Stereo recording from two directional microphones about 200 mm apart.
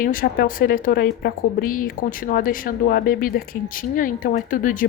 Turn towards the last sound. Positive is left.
turn(degrees=40)  # may be behind; listen again after turning